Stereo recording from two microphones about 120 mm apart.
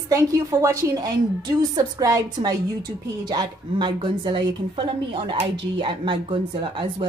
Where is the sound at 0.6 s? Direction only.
30° right (ahead or behind).